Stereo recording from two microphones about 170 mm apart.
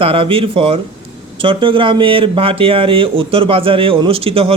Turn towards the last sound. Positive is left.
turn(degrees=-35)  # may be behind; listen again after turning